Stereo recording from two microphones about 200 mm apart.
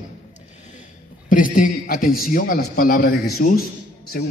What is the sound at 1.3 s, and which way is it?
A man's voice, 40° left (ahead or behind).